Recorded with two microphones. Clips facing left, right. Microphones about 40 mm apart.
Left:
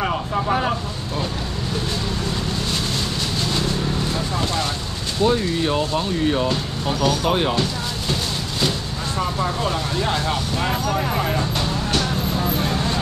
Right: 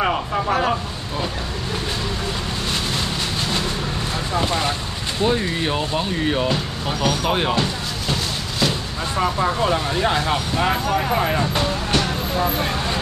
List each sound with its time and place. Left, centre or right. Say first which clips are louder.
0.0 s vehicle: right 2 dB; centre
4.4 s speech: right 2 dB; centre
9.1 s speech: right 3 dB; centre